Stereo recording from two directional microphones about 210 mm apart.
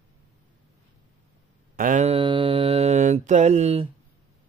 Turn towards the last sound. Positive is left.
turn(degrees=-30)  # may be behind; listen again after turning